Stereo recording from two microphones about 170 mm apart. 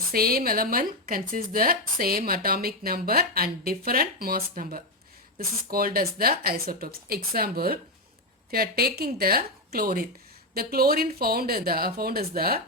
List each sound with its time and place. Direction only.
0.1 s a woman's voice: 60° right (ahead or behind)